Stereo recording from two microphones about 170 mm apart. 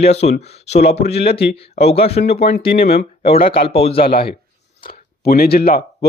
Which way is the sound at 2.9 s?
35° left (ahead or behind).